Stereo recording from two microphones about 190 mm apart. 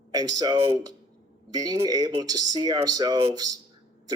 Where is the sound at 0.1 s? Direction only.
20° right (ahead or behind).